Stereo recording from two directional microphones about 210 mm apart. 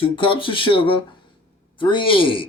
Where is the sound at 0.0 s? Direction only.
25° left (ahead or behind).